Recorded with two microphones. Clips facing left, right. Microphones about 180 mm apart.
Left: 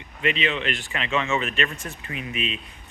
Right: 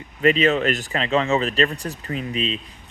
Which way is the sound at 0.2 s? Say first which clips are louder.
Right 8 dB; 40° right (ahead or behind).